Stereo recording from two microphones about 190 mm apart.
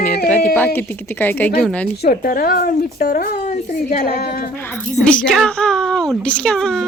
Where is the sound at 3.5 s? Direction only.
40° left (ahead or behind).